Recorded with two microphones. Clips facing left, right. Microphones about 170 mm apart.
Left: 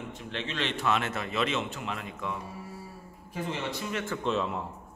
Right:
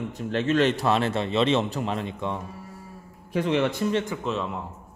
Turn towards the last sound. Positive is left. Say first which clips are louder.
# even
turn(degrees=0)  # may be behind; listen again after turning